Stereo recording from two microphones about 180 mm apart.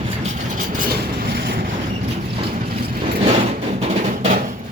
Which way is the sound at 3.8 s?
45° right (ahead or behind).